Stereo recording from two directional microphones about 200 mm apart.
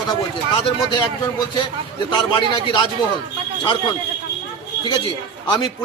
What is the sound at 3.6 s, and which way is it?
Speech, 25° left (ahead or behind).